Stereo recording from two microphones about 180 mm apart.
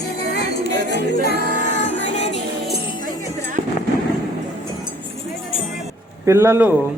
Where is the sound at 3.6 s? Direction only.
30° right (ahead or behind).